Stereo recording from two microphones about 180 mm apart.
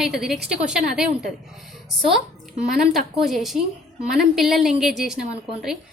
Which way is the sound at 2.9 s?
Centre (ahead or behind).